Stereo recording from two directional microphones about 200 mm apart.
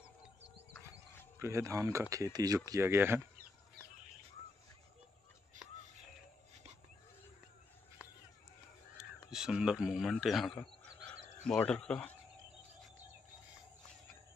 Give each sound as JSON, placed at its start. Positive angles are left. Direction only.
{"t": 1.4, "sound": "speech", "side_deg": -15}
{"t": 5.5, "sound": "music", "side_deg": -40}
{"t": 8.9, "sound": "speech", "side_deg": -5}